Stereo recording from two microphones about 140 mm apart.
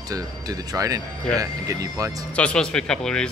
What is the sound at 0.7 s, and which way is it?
Speech, 25° right (ahead or behind).